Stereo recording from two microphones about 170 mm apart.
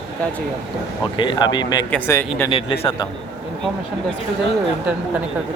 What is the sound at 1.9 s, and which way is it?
Speech, 15° left (ahead or behind).